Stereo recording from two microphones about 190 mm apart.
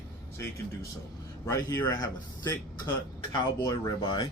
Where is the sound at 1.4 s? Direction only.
20° left (ahead or behind).